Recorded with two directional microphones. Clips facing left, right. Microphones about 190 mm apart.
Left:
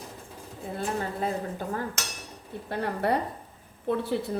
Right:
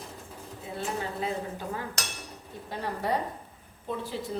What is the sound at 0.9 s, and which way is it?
Speech, 50° left (ahead or behind).